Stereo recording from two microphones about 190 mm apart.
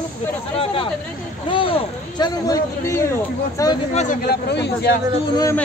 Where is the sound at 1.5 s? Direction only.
30° left (ahead or behind).